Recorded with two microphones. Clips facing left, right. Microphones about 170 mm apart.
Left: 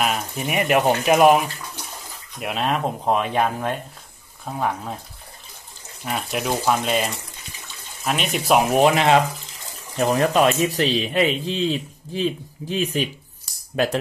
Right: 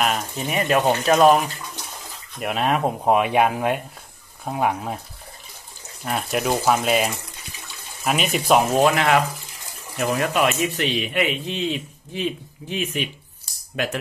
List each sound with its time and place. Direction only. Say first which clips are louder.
0.4 s speech: left 1 dB; 15° left (ahead or behind)
2.3 s speech: right 2 dB; centre (ahead or behind)
6.0 s speech: right 2 dB; centre (ahead or behind)
8.6 s speech: left 2 dB; 15° left (ahead or behind)
9.9 s speech: left 3 dB; 35° left (ahead or behind)